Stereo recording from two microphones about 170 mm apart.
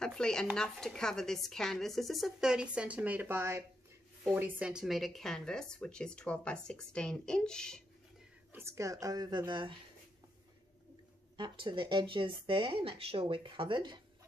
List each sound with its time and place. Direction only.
0.0 s speech: 5° left (ahead or behind)
8.5 s speech: 15° right (ahead or behind)
11.3 s speech: 30° right (ahead or behind)